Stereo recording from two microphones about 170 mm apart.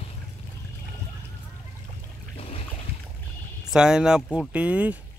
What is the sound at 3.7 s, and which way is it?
Speech, 5° right (ahead or behind).